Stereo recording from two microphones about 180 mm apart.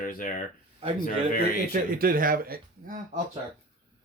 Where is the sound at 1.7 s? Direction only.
55° right (ahead or behind).